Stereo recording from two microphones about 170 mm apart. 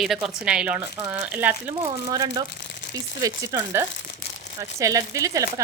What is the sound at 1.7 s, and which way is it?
Speech, 20° right (ahead or behind).